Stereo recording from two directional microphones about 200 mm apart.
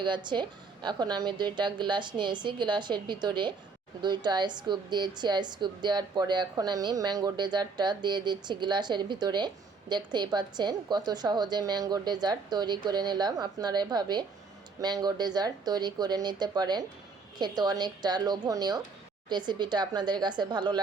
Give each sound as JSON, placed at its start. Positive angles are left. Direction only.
{"t": 0.0, "sound": "a woman's voice", "side_deg": -25}